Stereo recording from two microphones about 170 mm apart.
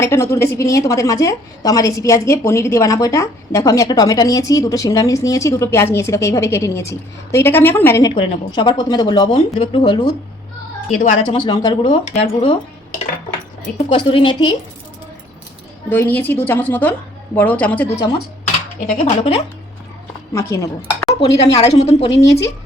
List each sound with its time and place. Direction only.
0.0 s a woman's voice: 15° left (ahead or behind)
8.1 s a woman's voice: 30° left (ahead or behind)
10.9 s speech: 45° left (ahead or behind)
11.3 s speech: 25° left (ahead or behind)
13.7 s speech: 30° left (ahead or behind)
15.9 s a woman's voice: 10° left (ahead or behind)
18.9 s a woman's voice: 35° left (ahead or behind)
20.5 s speech: 20° left (ahead or behind)
21.2 s a woman's voice: 35° left (ahead or behind)
22.2 s speech: 90° left